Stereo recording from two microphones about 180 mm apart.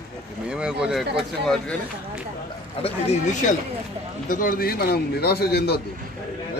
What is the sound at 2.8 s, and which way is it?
Speech, 40° left (ahead or behind).